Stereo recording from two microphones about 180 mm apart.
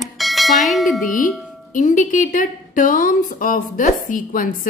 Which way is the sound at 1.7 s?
45° left (ahead or behind).